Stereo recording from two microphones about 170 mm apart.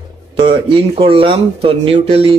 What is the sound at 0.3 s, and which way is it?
Speech, 30° right (ahead or behind).